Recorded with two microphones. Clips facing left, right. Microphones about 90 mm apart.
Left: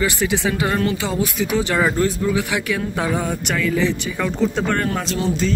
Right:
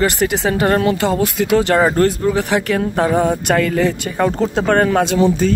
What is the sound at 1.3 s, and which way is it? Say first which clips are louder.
Speech: right 6 dB; 70° right (ahead or behind).